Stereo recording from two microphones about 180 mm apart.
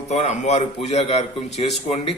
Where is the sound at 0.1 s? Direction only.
40° left (ahead or behind).